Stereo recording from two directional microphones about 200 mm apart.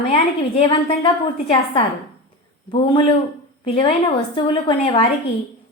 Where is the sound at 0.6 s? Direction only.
25° left (ahead or behind).